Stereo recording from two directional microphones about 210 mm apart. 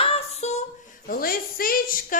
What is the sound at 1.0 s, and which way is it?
Speech, 45° left (ahead or behind).